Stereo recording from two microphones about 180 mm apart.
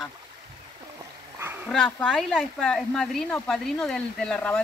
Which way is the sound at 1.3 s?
15° right (ahead or behind).